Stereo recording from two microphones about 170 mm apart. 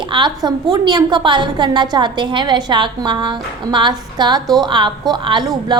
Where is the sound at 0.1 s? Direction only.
25° right (ahead or behind).